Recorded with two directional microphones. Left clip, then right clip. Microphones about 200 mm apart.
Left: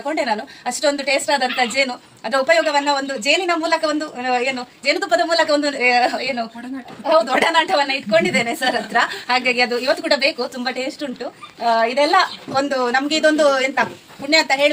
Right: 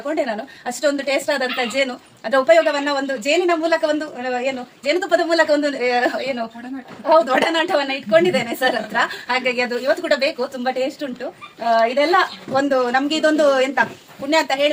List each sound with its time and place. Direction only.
0.3 s a woman's voice: 15° right (ahead or behind)
7.1 s a woman's voice: 20° right (ahead or behind)